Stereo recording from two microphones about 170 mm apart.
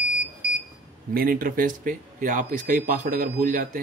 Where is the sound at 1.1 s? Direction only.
60° right (ahead or behind).